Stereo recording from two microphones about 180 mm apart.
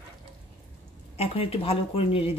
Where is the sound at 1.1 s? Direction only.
35° left (ahead or behind).